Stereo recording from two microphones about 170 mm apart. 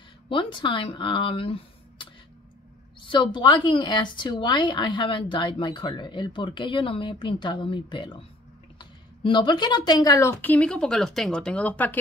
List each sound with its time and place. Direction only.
0.3 s speech: 30° left (ahead or behind); by 12.0 s 10° left (ahead or behind)